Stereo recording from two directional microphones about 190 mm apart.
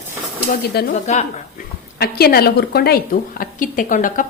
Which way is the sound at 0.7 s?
55° left (ahead or behind).